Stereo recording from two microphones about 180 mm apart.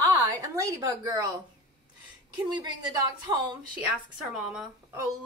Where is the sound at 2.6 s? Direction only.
25° right (ahead or behind).